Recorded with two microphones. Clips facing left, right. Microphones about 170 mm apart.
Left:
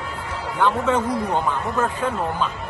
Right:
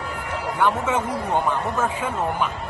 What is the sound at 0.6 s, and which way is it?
Speech, 10° right (ahead or behind).